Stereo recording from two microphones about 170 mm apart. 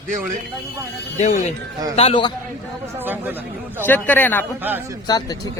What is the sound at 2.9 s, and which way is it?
Speech, 10° right (ahead or behind).